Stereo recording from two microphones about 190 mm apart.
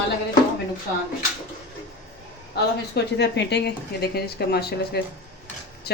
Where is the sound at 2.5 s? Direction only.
60° left (ahead or behind).